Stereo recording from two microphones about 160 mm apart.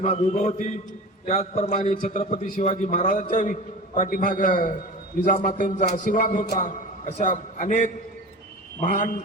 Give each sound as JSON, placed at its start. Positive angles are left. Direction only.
{"t": 0.0, "sound": "a man's voice", "side_deg": 45}